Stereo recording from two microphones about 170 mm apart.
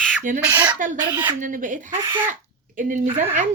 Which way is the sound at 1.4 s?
50° right (ahead or behind).